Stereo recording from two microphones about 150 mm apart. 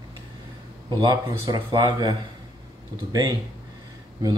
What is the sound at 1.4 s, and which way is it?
Speech, 30° right (ahead or behind).